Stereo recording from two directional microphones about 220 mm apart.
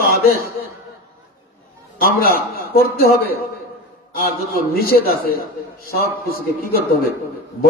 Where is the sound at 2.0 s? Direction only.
40° left (ahead or behind).